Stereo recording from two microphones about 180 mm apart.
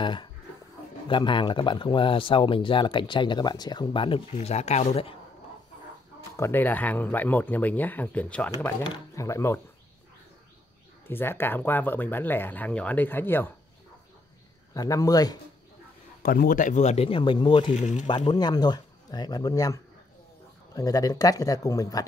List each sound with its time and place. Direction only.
0.0 s speech: 25° left (ahead or behind)
6.3 s speech: 15° left (ahead or behind)
11.1 s speech: 10° left (ahead or behind)
14.7 s speech: 20° left (ahead or behind)
16.2 s speech: 50° left (ahead or behind); by 17.7 s 30° left (ahead or behind)
17.7 s speech: 40° left (ahead or behind)
18.0 s speech: 25° left (ahead or behind)